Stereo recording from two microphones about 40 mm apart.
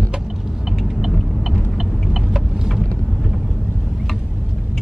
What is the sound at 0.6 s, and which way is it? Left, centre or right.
Vehicle, centre.